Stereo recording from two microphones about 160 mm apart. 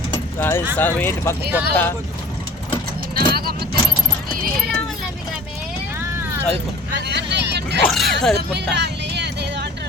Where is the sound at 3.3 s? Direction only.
75° right (ahead or behind).